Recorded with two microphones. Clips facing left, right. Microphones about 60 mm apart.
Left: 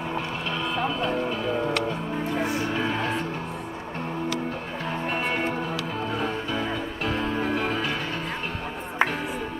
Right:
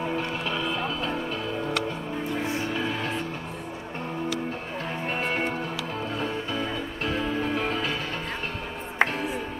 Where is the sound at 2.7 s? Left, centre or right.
Left.